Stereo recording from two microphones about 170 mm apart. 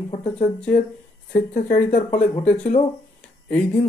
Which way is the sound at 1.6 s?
50° left (ahead or behind).